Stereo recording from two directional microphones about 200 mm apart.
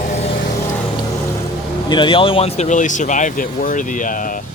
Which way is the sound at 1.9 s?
25° left (ahead or behind).